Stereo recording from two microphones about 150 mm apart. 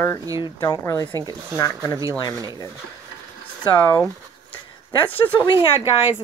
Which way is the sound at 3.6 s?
15° left (ahead or behind).